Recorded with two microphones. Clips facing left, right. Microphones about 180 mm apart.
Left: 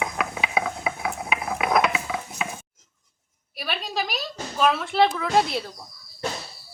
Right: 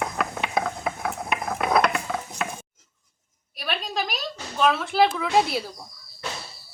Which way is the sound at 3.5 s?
Centre (ahead or behind).